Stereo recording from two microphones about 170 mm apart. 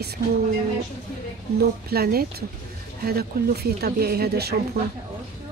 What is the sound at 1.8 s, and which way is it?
Speech, 65° right (ahead or behind).